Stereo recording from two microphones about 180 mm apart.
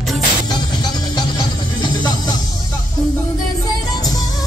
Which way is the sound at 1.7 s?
25° left (ahead or behind).